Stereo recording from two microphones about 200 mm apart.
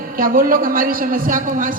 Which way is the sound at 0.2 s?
45° right (ahead or behind).